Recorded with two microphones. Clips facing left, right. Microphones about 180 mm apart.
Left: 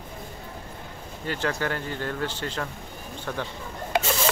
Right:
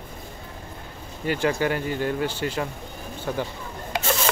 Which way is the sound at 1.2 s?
15° right (ahead or behind).